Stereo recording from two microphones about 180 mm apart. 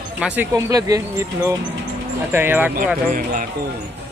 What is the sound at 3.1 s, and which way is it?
Speech, 50° right (ahead or behind).